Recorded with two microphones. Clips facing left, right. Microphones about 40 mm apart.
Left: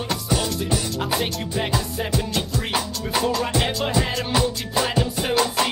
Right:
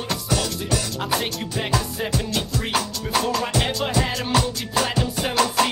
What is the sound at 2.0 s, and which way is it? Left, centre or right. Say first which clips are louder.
Music: even; centre.